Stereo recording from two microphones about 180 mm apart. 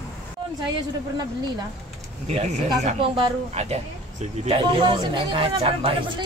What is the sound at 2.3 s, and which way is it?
Speech, 40° right (ahead or behind).